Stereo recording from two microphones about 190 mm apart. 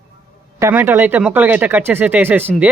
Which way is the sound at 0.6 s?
10° right (ahead or behind).